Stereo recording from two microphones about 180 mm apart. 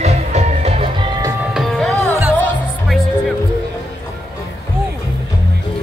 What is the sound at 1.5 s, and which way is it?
Music, centre (ahead or behind).